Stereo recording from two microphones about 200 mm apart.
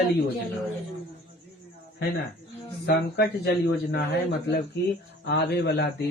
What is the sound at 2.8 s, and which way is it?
Speech, 50° left (ahead or behind).